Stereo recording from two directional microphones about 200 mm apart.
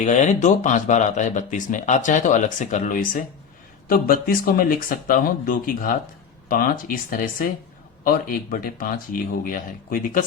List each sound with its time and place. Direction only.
0.0 s speech: 35° left (ahead or behind)